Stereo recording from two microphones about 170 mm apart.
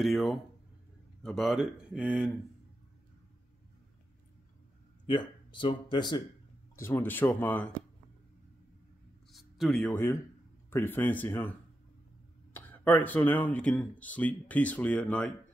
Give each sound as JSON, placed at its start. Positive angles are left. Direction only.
{"t": 0.0, "sound": "speech", "side_deg": 0}
{"t": 5.0, "sound": "speech", "side_deg": 25}
{"t": 6.8, "sound": "speech", "side_deg": 15}
{"t": 9.3, "sound": "a sound", "side_deg": 0}
{"t": 10.7, "sound": "speech", "side_deg": 10}
{"t": 12.5, "sound": "speech", "side_deg": 10}